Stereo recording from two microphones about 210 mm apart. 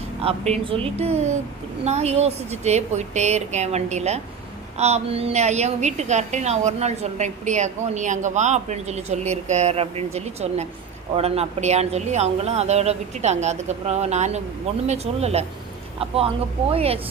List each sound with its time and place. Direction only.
0.2 s a woman's voice: 30° right (ahead or behind)